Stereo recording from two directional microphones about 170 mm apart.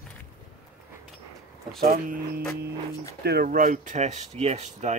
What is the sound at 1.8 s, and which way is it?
Speech, 60° right (ahead or behind).